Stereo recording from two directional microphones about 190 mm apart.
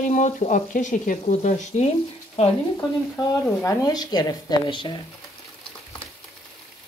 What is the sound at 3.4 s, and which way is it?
A woman's voice, 20° left (ahead or behind).